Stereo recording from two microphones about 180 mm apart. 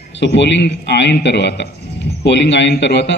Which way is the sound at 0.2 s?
80° left.